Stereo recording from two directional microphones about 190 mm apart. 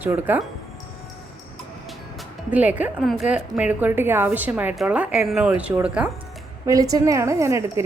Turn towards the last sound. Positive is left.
turn(degrees=-15)  # may be behind; listen again after turning